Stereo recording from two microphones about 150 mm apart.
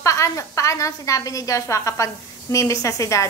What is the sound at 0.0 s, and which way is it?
A woman's voice, 20° left (ahead or behind).